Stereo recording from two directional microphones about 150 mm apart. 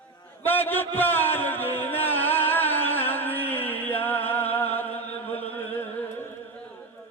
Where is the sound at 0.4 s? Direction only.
15° left (ahead or behind).